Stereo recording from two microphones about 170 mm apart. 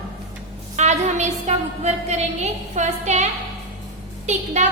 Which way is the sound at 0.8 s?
40° right (ahead or behind).